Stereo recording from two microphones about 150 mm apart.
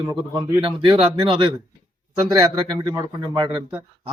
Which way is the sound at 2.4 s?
25° right (ahead or behind).